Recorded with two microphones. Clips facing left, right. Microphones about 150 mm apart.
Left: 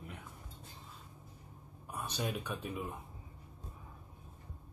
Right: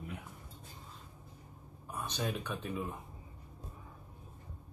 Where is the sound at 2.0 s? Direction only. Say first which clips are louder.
Right 1 dB; 10° left (ahead or behind).